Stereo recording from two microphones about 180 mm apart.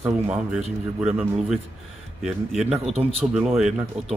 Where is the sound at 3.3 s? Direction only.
5° right (ahead or behind).